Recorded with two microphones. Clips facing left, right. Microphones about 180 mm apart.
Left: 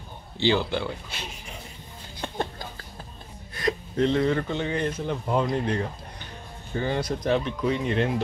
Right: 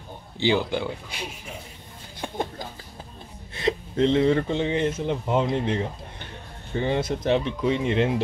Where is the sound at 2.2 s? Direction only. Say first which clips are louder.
Right 1 dB; 15° right (ahead or behind).